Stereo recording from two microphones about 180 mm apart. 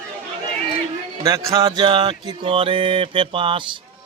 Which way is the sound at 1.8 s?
25° right (ahead or behind).